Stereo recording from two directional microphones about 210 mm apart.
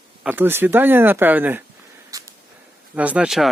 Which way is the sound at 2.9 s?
5° right (ahead or behind).